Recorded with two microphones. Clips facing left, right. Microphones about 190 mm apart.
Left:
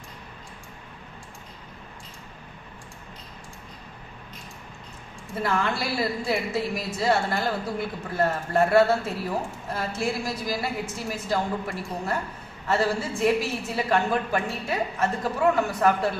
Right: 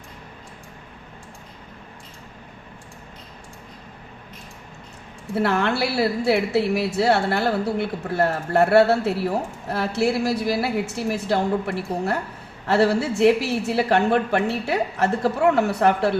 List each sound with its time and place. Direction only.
5.3 s a woman's voice: 70° right (ahead or behind)